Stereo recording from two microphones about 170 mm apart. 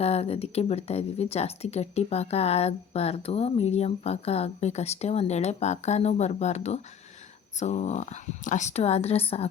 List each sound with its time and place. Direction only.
0.0 s speech: 35° left (ahead or behind)